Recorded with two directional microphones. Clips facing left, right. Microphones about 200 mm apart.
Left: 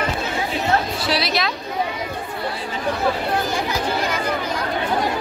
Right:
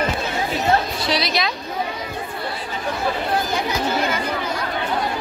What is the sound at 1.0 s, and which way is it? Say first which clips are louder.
Speech: even; 5° left (ahead or behind).